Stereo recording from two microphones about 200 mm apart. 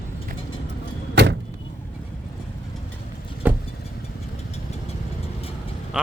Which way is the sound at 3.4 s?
10° right (ahead or behind).